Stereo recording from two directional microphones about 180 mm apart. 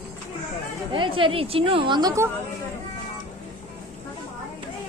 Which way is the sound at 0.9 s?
30° right (ahead or behind).